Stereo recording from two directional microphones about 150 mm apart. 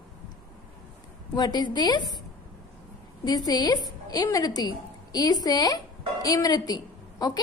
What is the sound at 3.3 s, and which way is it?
A woman's voice, 25° left (ahead or behind).